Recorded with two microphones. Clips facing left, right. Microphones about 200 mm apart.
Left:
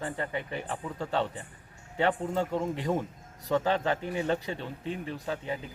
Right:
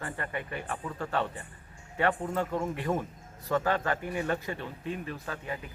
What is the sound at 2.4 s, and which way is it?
Speech, 15° left (ahead or behind).